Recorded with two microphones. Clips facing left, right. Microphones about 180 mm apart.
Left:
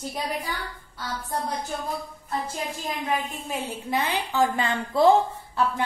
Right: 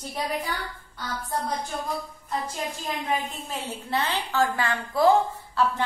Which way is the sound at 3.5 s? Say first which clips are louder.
Left 2 dB; 10° left (ahead or behind).